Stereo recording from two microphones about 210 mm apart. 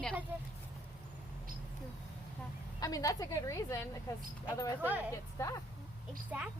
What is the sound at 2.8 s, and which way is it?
A woman's voice, 15° left (ahead or behind).